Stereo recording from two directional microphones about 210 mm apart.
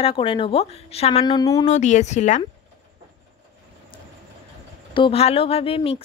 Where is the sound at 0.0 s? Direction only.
25° left (ahead or behind).